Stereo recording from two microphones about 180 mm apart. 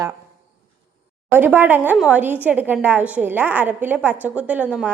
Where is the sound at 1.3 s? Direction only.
10° right (ahead or behind).